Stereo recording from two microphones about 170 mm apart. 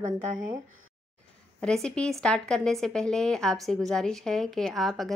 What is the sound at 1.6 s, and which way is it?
A woman's voice, 5° left (ahead or behind).